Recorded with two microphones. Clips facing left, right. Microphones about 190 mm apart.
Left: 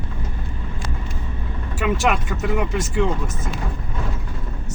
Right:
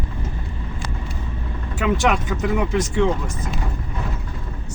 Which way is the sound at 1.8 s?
Centre (ahead or behind).